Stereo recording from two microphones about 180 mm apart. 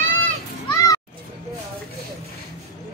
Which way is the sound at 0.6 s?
20° left (ahead or behind).